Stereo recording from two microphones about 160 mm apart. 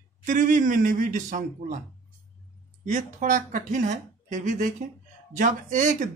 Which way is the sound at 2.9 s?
50° right (ahead or behind).